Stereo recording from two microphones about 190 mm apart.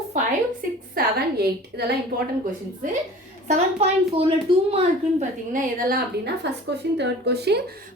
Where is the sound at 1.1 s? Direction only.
55° right (ahead or behind).